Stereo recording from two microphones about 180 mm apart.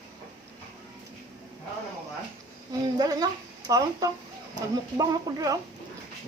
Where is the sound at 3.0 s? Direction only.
20° right (ahead or behind).